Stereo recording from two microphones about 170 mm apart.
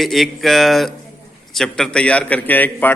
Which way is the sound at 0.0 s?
Centre (ahead or behind).